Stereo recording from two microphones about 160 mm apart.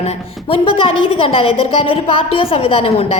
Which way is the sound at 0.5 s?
35° left (ahead or behind).